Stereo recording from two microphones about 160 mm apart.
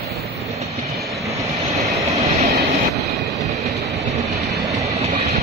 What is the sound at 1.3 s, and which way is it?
Vehicle, 20° right (ahead or behind).